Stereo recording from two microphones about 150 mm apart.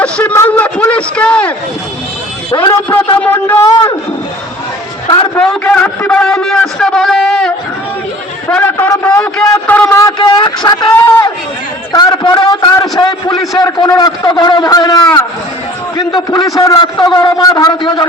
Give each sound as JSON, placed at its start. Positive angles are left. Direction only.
{"t": 0.0, "sound": "a man's voice", "side_deg": 10}
{"t": 3.2, "sound": "a man's voice", "side_deg": 10}
{"t": 5.0, "sound": "a man's voice", "side_deg": 30}
{"t": 5.4, "sound": "a man's voice", "side_deg": 5}
{"t": 8.4, "sound": "a man's voice", "side_deg": 10}
{"t": 10.0, "sound": "a man's voice", "side_deg": 25}
{"t": 13.3, "sound": "a man's voice", "side_deg": 0}
{"t": 13.6, "sound": "a man's voice", "side_deg": 25}